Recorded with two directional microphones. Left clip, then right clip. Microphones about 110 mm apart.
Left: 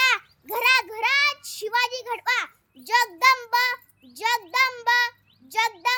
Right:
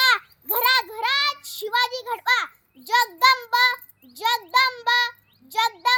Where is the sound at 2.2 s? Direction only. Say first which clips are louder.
Right 4 dB; 40° left (ahead or behind).